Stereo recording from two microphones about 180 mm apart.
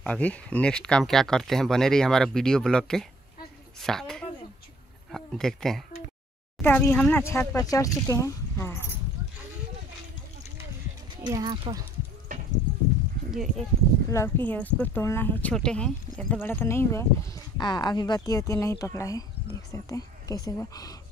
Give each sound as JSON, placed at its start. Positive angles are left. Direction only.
{"t": 0.0, "sound": "speech", "side_deg": 5}
{"t": 11.2, "sound": "speech", "side_deg": -25}
{"t": 13.3, "sound": "speech", "side_deg": 0}
{"t": 14.1, "sound": "speech", "side_deg": 15}